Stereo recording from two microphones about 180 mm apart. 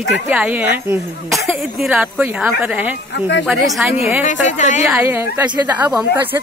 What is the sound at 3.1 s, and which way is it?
Speech, 80° left.